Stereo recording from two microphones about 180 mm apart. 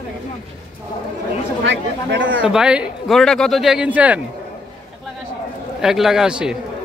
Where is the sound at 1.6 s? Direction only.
90° right.